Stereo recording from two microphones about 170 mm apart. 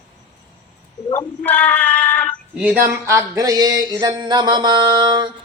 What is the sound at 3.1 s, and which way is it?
Speech, 20° right (ahead or behind).